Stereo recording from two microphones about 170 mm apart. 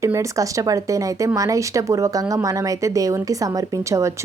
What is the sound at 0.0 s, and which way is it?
Speech, 15° right (ahead or behind).